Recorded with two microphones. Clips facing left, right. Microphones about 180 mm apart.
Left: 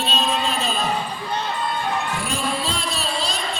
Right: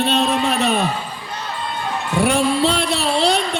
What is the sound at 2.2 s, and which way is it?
Music, 65° right (ahead or behind).